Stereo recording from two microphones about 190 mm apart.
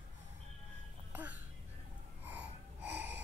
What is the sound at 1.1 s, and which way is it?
Music, 10° right (ahead or behind).